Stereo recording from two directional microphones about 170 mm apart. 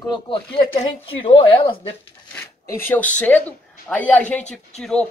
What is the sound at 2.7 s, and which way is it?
Speech, 15° left (ahead or behind).